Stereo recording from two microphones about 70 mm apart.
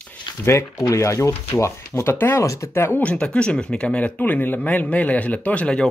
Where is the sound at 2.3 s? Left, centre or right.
Left.